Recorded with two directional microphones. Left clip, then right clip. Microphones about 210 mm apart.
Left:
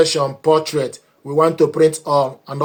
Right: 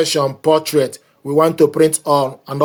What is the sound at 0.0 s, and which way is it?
Speech, 40° right (ahead or behind).